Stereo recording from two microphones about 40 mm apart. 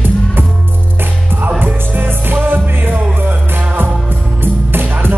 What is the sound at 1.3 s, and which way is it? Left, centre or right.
Music, right.